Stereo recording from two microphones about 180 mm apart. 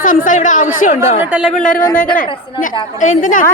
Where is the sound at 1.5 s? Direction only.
45° left (ahead or behind).